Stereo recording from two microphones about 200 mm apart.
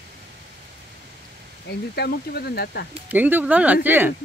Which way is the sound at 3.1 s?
10° right (ahead or behind).